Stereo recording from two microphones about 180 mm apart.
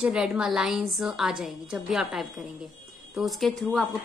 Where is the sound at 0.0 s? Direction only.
5° right (ahead or behind).